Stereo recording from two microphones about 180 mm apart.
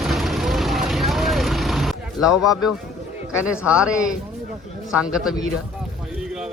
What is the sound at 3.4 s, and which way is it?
Speech, 5° right (ahead or behind).